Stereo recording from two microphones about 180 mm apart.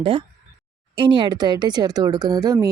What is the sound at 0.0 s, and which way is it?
Speech, 30° right (ahead or behind).